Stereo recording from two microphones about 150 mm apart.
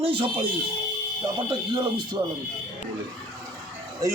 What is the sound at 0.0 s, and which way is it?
Speech, 35° right (ahead or behind).